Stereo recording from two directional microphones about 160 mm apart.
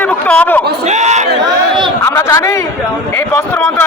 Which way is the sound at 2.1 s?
15° left (ahead or behind).